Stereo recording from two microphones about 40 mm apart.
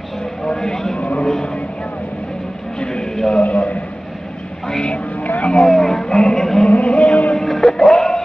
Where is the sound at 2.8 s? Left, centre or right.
Centre.